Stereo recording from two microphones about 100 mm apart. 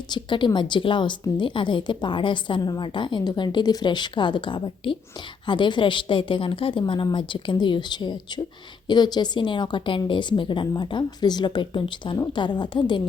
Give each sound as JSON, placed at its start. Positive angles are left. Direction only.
{"t": 0.1, "sound": "a woman's voice", "side_deg": 50}